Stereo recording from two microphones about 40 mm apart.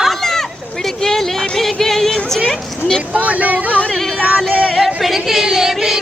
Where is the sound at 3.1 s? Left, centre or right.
Right.